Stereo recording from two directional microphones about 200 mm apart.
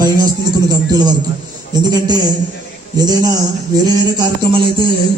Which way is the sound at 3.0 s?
20° right (ahead or behind).